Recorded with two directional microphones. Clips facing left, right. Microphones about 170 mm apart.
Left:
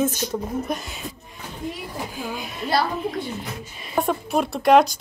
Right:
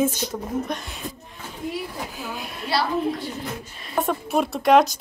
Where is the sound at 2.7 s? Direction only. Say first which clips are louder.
Even; 45° left (ahead or behind).